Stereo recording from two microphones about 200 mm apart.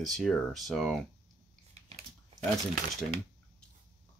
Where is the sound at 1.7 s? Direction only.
30° right (ahead or behind).